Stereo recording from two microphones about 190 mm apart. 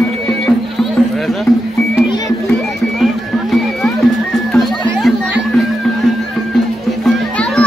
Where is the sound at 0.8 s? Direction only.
Centre (ahead or behind).